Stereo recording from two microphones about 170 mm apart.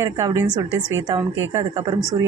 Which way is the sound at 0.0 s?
20° right (ahead or behind).